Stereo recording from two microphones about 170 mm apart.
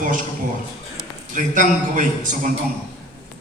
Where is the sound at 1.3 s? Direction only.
50° right (ahead or behind).